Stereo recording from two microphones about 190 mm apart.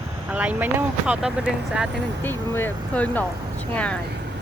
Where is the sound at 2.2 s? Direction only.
10° left (ahead or behind).